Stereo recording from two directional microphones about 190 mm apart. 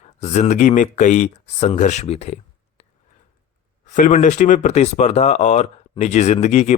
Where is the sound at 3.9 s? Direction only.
40° left (ahead or behind).